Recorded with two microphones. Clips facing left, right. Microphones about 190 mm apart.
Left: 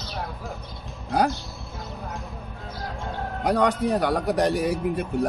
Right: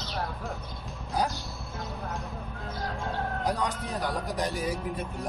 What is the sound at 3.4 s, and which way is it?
Speech, 70° left (ahead or behind).